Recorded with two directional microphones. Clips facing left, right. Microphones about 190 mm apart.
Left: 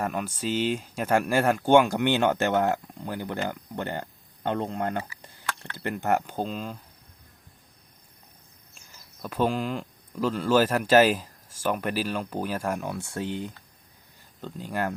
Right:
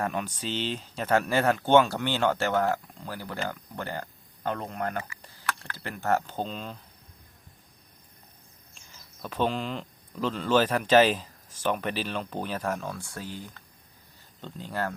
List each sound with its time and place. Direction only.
0.0 s speech: 5° left (ahead or behind)
9.2 s speech: 5° left (ahead or behind); by 13.6 s 25° left (ahead or behind)
14.4 s speech: 10° left (ahead or behind)